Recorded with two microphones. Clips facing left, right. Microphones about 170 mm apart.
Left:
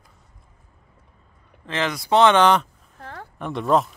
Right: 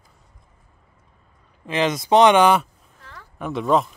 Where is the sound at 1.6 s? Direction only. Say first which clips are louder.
Right 4 dB; 15° right (ahead or behind).